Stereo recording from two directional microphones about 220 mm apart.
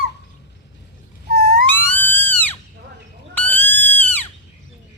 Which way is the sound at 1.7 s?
10° left (ahead or behind).